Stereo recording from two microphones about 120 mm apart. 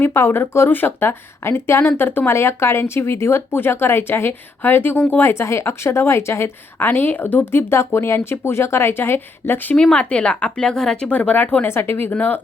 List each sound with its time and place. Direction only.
0.0 s speech: 20° left (ahead or behind)
9.7 s speech: 5° left (ahead or behind)